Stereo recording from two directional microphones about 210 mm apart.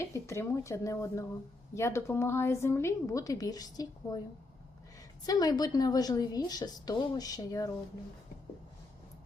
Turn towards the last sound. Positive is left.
turn(degrees=15)  # may be behind; listen again after turning